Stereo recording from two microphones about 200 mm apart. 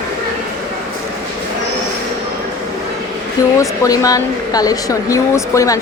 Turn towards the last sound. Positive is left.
turn(degrees=15)  # may be behind; listen again after turning